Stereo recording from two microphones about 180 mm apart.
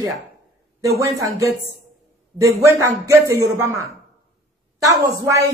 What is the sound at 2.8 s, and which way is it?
Speech, 15° right (ahead or behind).